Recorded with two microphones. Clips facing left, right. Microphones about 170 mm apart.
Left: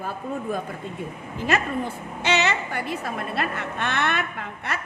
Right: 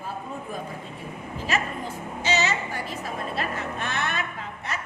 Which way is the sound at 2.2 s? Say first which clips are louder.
Left 3 dB; 65° left (ahead or behind).